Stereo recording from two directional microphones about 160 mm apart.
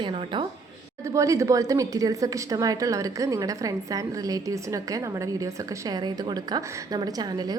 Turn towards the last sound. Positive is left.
turn(degrees=-25)  # may be behind; listen again after turning